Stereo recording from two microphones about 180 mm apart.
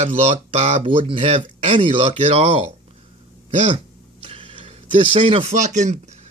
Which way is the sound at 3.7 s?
30° right (ahead or behind).